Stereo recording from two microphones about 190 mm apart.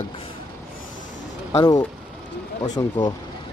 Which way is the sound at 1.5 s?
20° left (ahead or behind).